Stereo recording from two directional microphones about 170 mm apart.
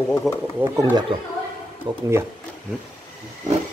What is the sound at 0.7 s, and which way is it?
Speech, 20° right (ahead or behind).